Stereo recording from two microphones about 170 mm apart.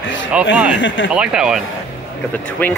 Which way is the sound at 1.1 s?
5° right (ahead or behind).